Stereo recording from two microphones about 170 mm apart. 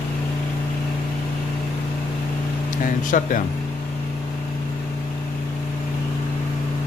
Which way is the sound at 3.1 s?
50° left (ahead or behind).